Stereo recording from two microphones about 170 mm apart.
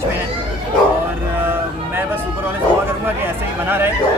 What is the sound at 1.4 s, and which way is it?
Speech, 10° right (ahead or behind).